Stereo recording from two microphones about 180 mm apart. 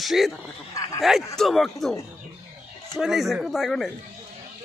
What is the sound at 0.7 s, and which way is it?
Speech, 20° left (ahead or behind).